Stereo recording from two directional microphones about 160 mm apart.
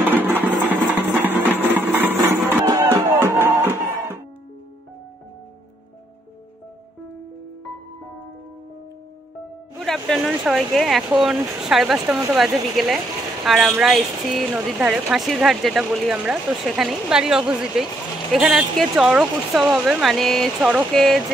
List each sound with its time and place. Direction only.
0.1 s music: 10° right (ahead or behind)
9.8 s speech: centre (ahead or behind)